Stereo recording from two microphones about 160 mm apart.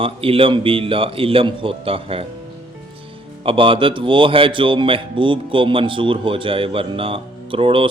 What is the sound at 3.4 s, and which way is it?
A man's voice, 35° right (ahead or behind).